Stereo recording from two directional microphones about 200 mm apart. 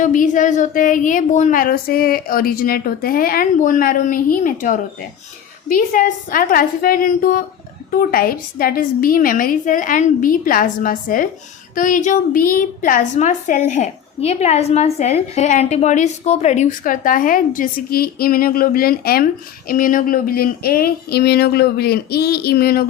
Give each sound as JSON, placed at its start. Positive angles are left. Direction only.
{"t": 0.0, "sound": "a woman's voice", "side_deg": 40}